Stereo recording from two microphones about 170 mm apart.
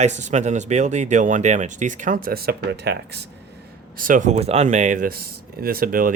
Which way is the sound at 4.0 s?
50° right (ahead or behind).